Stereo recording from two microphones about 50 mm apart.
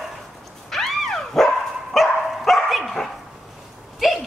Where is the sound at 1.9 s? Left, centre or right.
Centre.